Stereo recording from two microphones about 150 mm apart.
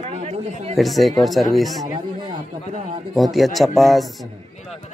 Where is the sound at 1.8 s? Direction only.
30° right (ahead or behind).